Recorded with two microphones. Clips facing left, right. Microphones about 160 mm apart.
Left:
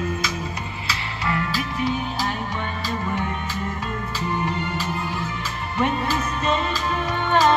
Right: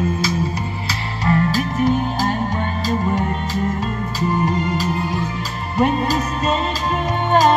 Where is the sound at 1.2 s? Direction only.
40° right (ahead or behind).